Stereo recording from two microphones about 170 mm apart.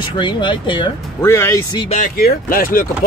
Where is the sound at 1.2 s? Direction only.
15° left (ahead or behind).